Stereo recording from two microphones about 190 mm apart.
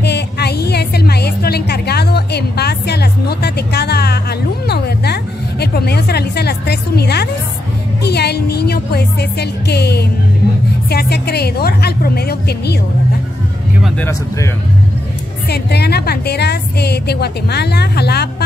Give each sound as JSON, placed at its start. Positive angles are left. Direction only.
{"t": 0.0, "sound": "music", "side_deg": 60}
{"t": 13.8, "sound": "speech", "side_deg": 10}
{"t": 15.4, "sound": "a woman's voice", "side_deg": 60}